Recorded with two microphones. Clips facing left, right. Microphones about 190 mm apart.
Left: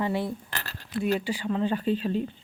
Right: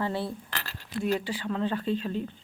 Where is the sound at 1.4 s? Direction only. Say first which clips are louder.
Left 4 dB; 5° left (ahead or behind).